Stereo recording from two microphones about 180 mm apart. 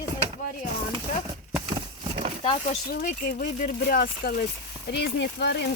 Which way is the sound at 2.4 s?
30° left (ahead or behind).